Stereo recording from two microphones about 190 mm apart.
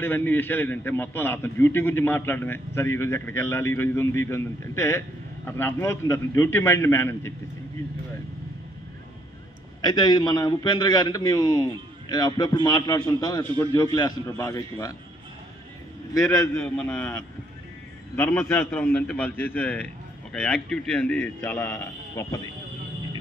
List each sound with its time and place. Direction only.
0.0 s a man's voice: 10° left (ahead or behind)
9.8 s a man's voice: 20° left (ahead or behind)
16.1 s a man's voice: 15° left (ahead or behind)
16.5 s a man's voice: 5° left (ahead or behind)